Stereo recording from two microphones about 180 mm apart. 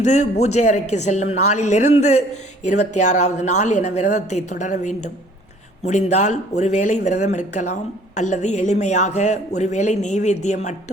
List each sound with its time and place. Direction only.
0.0 s speech: 40° left (ahead or behind)